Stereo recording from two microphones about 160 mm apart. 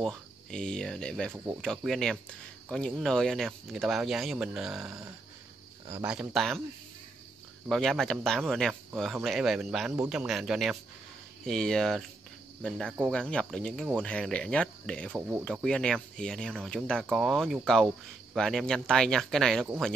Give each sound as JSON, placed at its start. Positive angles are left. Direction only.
{"t": 0.0, "sound": "speech", "side_deg": 5}
{"t": 1.3, "sound": "speech", "side_deg": -15}
{"t": 1.6, "sound": "speech", "side_deg": 0}
{"t": 6.0, "sound": "speech", "side_deg": 0}
{"t": 7.7, "sound": "speech", "side_deg": 0}
{"t": 15.1, "sound": "speech", "side_deg": -10}
{"t": 15.4, "sound": "speech", "side_deg": 5}